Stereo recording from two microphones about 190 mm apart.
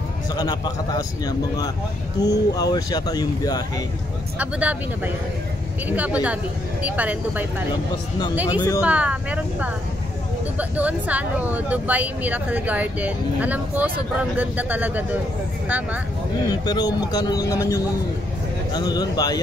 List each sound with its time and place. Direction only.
0.3 s speech: 20° left (ahead or behind)
4.4 s speech: 10° right (ahead or behind)
8.5 s speech: 20° left (ahead or behind)
8.8 s speech: 5° right (ahead or behind)
16.4 s speech: 20° left (ahead or behind)